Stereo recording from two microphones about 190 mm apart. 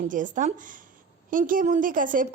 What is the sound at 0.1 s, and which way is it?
A woman's voice, 45° right (ahead or behind).